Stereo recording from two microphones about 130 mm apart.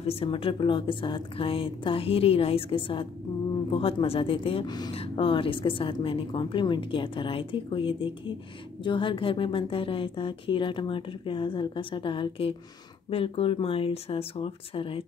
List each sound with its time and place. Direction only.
0.0 s speech: 45° left (ahead or behind)
4.6 s a woman's voice: 30° left (ahead or behind)
4.9 s a woman's voice: 45° left (ahead or behind)